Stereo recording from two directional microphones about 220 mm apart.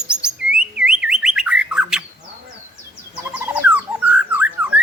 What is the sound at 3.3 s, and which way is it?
Bird, 5° right (ahead or behind).